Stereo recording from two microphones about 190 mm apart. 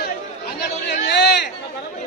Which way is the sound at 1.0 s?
65° left (ahead or behind).